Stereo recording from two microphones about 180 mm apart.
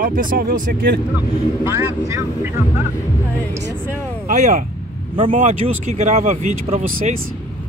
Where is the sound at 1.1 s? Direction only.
15° right (ahead or behind).